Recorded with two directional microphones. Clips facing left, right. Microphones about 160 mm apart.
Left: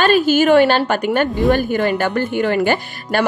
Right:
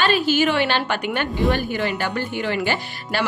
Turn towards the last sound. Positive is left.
turn(degrees=50)  # may be behind; listen again after turning